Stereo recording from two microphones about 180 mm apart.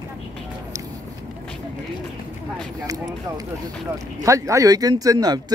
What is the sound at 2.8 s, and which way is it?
Speech, 20° right (ahead or behind).